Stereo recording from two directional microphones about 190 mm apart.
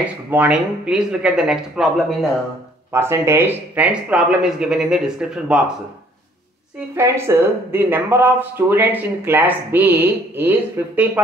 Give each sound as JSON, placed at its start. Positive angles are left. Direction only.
{"t": 0.0, "sound": "speech", "side_deg": -10}
{"t": 2.9, "sound": "speech", "side_deg": -15}
{"t": 7.0, "sound": "speech", "side_deg": -15}